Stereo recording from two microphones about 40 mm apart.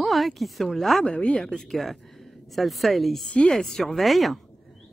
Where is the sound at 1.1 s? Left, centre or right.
Left.